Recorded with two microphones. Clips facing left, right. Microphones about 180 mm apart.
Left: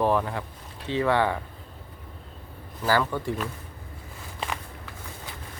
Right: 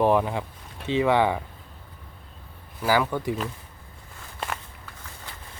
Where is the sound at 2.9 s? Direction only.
10° right (ahead or behind).